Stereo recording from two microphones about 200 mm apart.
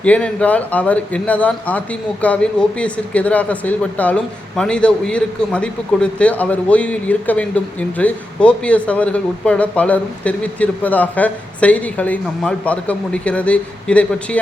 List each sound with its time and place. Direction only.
0.0 s speech: 5° left (ahead or behind)